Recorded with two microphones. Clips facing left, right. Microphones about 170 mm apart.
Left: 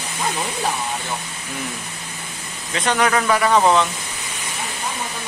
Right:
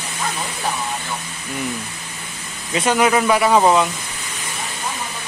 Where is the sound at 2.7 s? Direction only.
10° right (ahead or behind).